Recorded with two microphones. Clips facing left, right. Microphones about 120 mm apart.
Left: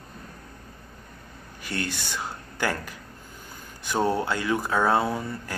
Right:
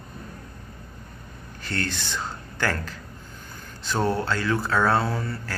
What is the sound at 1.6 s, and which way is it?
Speech, 10° left (ahead or behind).